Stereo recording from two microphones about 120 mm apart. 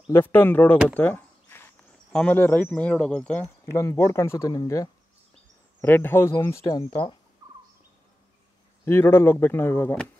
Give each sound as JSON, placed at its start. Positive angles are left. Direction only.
{"t": 0.1, "sound": "speech", "side_deg": 15}
{"t": 0.9, "sound": "a sound", "side_deg": 15}
{"t": 2.1, "sound": "speech", "side_deg": 15}
{"t": 3.6, "sound": "speech", "side_deg": 25}
{"t": 5.8, "sound": "speech", "side_deg": 15}
{"t": 8.8, "sound": "speech", "side_deg": 20}